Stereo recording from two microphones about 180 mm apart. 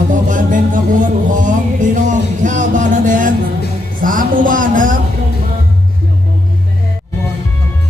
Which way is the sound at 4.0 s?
50° right (ahead or behind).